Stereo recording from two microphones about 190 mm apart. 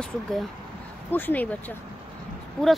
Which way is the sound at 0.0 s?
Centre (ahead or behind).